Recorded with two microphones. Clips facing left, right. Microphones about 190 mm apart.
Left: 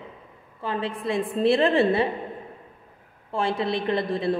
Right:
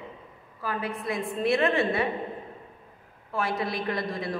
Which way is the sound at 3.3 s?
30° left (ahead or behind).